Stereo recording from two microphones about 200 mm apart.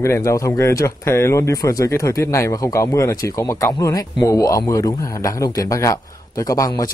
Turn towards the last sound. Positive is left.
turn(degrees=20)  # may be behind; listen again after turning